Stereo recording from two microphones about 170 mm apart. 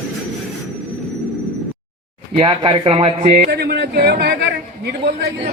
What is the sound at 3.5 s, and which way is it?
Speech, 75° right (ahead or behind).